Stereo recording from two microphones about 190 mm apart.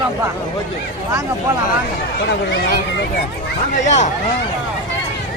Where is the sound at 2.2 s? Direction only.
60° left (ahead or behind).